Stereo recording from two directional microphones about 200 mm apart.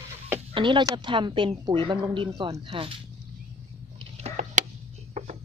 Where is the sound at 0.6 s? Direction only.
25° right (ahead or behind).